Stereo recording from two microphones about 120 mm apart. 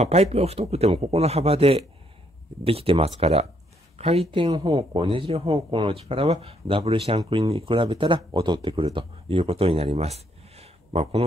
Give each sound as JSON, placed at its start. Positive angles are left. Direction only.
{"t": 0.0, "sound": "a man's voice", "side_deg": -65}
{"t": 4.5, "sound": "speech", "side_deg": -30}
{"t": 4.7, "sound": "speech", "side_deg": -45}
{"t": 9.9, "sound": "a sound", "side_deg": -60}